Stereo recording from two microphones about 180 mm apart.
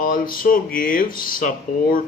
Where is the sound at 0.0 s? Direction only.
50° left (ahead or behind).